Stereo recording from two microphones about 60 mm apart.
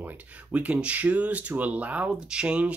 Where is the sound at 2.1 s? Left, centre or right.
Centre.